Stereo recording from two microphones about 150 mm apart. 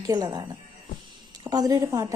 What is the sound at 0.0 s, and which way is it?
A woman's voice, 25° right (ahead or behind).